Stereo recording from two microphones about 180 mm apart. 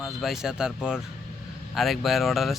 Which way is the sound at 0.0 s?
Centre (ahead or behind).